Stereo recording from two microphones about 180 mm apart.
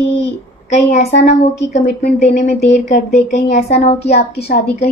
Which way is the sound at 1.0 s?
35° left (ahead or behind).